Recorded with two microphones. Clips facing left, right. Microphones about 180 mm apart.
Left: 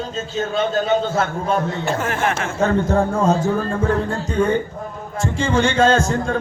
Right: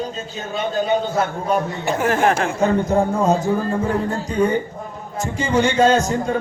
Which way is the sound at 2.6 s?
15° right (ahead or behind).